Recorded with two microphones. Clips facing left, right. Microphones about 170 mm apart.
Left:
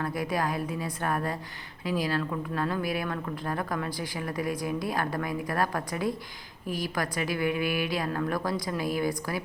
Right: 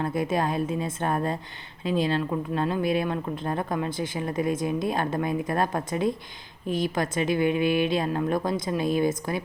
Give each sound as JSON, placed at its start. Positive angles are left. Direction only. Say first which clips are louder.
{"t": 0.0, "sound": "speech", "louder": "right 4 dB", "side_deg": -25}